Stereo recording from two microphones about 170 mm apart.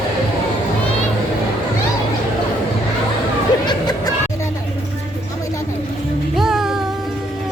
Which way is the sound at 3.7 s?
25° left (ahead or behind).